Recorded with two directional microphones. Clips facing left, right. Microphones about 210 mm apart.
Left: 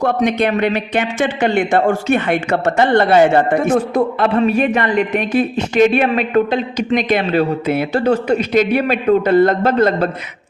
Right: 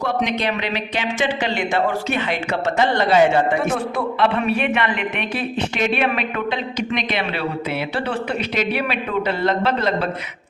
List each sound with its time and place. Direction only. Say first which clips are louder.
0.0 s a man's voice: left 6 dB; 50° left (ahead or behind)
3.5 s speech: left 6 dB; 40° left (ahead or behind)